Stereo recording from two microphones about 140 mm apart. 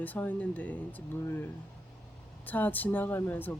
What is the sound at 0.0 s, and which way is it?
Speech, 10° left (ahead or behind).